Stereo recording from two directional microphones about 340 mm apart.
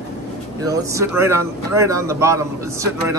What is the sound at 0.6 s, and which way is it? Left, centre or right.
Speech, centre.